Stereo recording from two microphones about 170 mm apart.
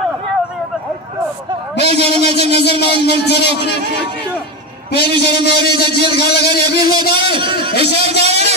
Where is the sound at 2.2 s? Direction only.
75° left (ahead or behind).